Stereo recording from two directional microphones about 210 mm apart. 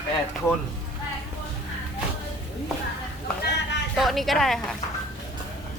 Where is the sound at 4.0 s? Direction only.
Centre (ahead or behind).